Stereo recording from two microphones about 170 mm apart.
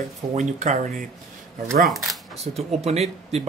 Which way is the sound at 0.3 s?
45° right (ahead or behind).